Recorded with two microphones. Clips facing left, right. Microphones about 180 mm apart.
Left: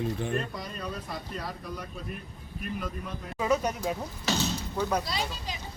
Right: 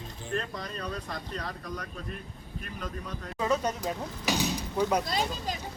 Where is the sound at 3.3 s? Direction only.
10° left (ahead or behind).